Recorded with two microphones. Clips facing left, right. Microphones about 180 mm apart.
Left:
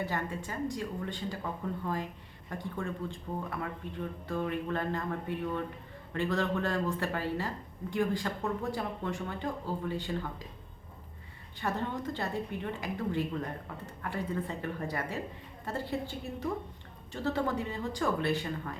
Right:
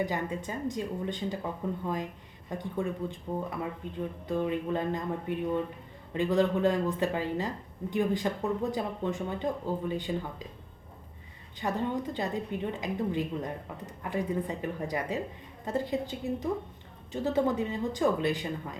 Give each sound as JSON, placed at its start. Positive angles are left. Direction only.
{"t": 0.0, "sound": "speech", "side_deg": -15}
{"t": 11.6, "sound": "speech", "side_deg": -15}